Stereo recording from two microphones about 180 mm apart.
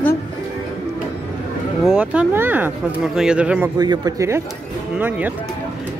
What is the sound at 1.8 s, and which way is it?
Speech, 5° right (ahead or behind).